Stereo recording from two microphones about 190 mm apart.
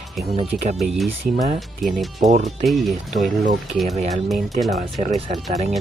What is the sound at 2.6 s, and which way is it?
Speech, centre (ahead or behind).